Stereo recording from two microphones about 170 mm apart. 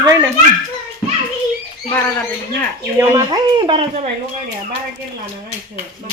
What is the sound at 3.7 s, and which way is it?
Speech, 35° right (ahead or behind).